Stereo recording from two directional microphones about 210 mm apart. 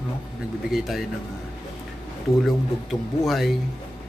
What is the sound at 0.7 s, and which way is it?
Speech, centre (ahead or behind).